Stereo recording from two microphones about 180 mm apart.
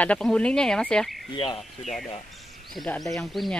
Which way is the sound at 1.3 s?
30° left (ahead or behind).